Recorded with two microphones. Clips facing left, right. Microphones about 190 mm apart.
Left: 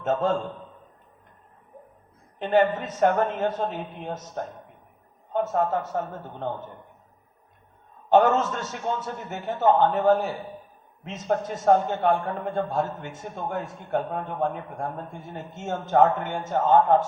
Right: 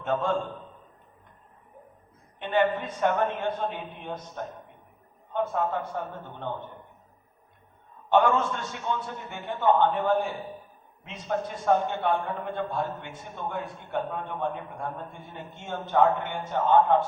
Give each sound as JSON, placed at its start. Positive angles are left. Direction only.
{"t": 0.0, "sound": "a man's voice", "side_deg": 40}
{"t": 2.4, "sound": "a man's voice", "side_deg": 40}
{"t": 5.3, "sound": "a man's voice", "side_deg": 40}
{"t": 8.1, "sound": "a man's voice", "side_deg": 40}